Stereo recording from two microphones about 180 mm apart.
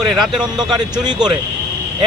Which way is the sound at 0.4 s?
25° right (ahead or behind).